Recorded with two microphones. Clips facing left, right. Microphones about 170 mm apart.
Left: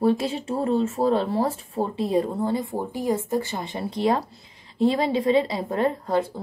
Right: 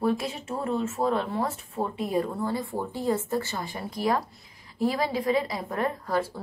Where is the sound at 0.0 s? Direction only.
30° left (ahead or behind).